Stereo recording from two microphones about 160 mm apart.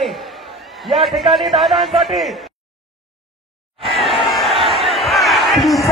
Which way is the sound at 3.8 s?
Centre (ahead or behind).